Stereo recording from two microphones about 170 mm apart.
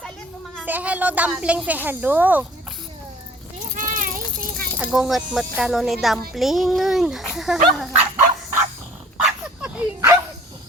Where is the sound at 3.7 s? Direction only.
50° right (ahead or behind).